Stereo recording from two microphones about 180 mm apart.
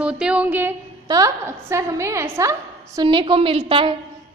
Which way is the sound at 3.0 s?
25° right (ahead or behind).